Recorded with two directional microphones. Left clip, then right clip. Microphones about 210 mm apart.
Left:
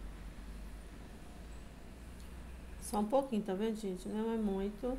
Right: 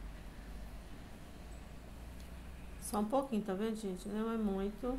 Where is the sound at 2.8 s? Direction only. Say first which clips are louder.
Left 2 dB; 10° left (ahead or behind).